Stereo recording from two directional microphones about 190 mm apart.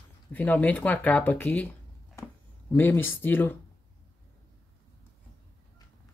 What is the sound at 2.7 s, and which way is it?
Speech, 10° left (ahead or behind).